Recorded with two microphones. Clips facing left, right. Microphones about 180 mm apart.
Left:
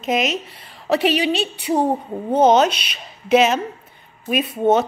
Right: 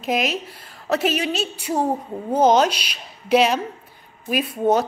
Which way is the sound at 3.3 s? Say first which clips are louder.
Left 2 dB; 5° left (ahead or behind).